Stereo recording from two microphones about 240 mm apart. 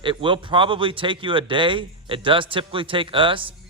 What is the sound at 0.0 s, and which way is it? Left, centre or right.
A man's voice, right.